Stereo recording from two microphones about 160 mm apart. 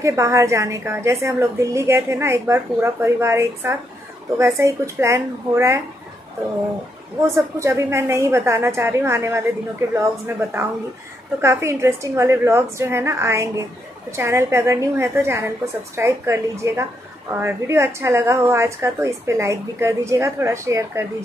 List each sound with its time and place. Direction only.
0.0 s a woman's voice: 20° right (ahead or behind)
7.2 s a woman's voice: 20° right (ahead or behind)